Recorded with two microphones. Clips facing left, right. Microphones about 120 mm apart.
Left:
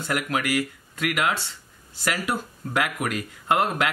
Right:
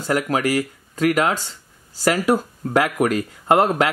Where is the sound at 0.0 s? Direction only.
35° right (ahead or behind).